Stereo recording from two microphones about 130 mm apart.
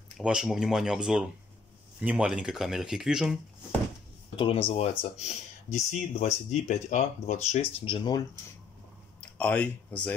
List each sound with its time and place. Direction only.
0.2 s speech: 5° right (ahead or behind)
4.4 s speech: 45° left (ahead or behind); by 7.6 s 65° left (ahead or behind)
7.8 s speech: 35° left (ahead or behind)
9.2 s speech: 10° left (ahead or behind)